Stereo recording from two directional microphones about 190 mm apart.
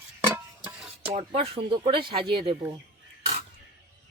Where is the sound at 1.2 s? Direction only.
30° right (ahead or behind).